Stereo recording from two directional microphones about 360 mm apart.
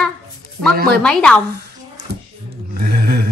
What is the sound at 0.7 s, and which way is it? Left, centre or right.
Speech, right.